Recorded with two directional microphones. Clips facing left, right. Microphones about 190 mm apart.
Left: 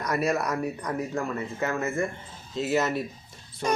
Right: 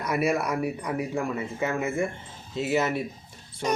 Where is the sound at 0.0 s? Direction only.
10° right (ahead or behind).